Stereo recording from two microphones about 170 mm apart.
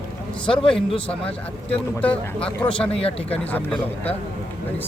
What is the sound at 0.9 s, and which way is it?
Speech, 35° left (ahead or behind).